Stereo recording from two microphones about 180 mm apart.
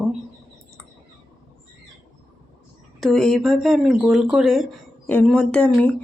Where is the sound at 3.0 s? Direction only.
Centre (ahead or behind).